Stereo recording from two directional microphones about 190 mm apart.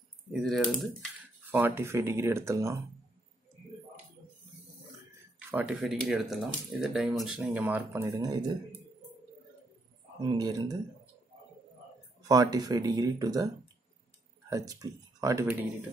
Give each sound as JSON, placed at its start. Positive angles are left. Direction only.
{"t": 0.3, "sound": "speech", "side_deg": 0}
{"t": 1.5, "sound": "speech", "side_deg": -10}
{"t": 5.5, "sound": "speech", "side_deg": -5}
{"t": 10.2, "sound": "speech", "side_deg": -20}
{"t": 12.3, "sound": "speech", "side_deg": -20}
{"t": 14.5, "sound": "speech", "side_deg": -20}